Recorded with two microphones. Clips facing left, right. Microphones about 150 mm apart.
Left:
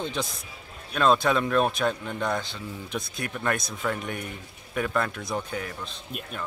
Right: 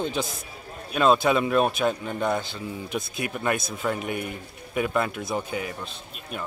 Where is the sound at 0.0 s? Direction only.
5° right (ahead or behind).